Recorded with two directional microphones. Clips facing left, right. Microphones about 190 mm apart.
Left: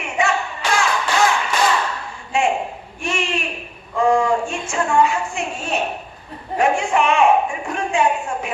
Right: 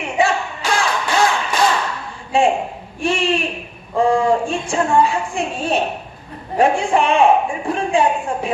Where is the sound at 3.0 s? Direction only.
35° right (ahead or behind).